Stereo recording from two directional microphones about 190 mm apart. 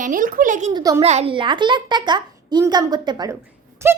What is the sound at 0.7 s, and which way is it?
Speech, 20° right (ahead or behind).